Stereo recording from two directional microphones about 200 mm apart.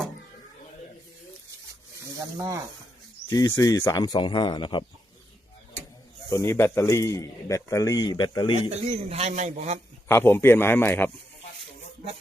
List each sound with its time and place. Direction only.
2.0 s speech: 15° right (ahead or behind)
3.2 s speech: 15° left (ahead or behind)
6.3 s a man's voice: 15° left (ahead or behind)
8.7 s speech: 30° right (ahead or behind)
10.1 s a man's voice: 10° left (ahead or behind)